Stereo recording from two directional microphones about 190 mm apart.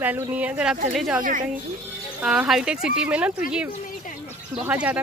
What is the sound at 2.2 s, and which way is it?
Speech, 5° right (ahead or behind).